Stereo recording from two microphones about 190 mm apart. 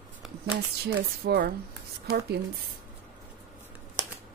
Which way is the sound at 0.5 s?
55° right (ahead or behind).